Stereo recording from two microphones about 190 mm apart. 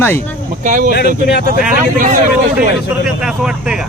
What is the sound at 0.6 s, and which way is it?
Speech, 45° right (ahead or behind).